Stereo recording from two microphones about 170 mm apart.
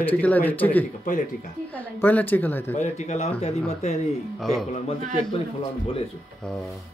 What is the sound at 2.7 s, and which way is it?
A man's voice, 40° left (ahead or behind).